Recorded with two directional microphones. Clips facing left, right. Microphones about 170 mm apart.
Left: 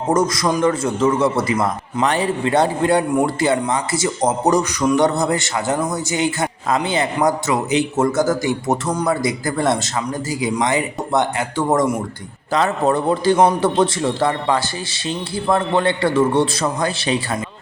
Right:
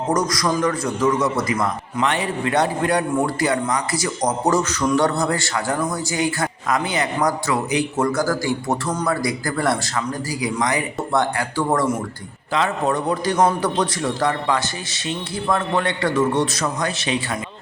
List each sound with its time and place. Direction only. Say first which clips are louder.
0.1 s speech: left 4 dB; 25° left (ahead or behind)
12.5 s speech: left 3 dB; 40° left (ahead or behind)